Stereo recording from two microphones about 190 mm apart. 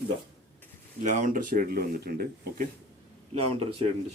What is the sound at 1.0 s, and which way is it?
Speech, 40° right (ahead or behind).